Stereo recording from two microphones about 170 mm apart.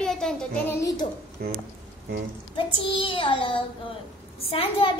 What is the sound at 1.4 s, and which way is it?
Speech, 65° right (ahead or behind).